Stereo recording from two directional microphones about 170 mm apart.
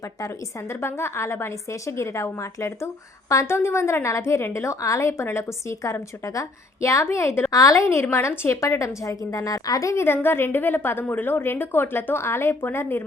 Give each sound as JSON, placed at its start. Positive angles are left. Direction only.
{"t": 0.7, "sound": "a woman's voice", "side_deg": 15}